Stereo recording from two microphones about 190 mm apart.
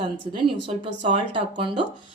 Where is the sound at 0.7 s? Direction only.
10° left (ahead or behind).